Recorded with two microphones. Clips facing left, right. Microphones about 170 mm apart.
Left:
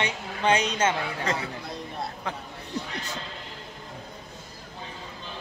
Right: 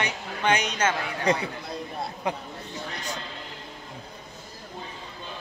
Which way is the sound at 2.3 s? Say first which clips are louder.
Right 7 dB; 15° right (ahead or behind).